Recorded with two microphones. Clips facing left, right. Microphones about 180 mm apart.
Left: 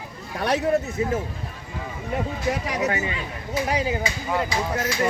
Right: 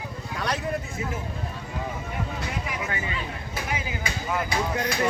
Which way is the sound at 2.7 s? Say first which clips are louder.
Left 6 dB; 40° left (ahead or behind).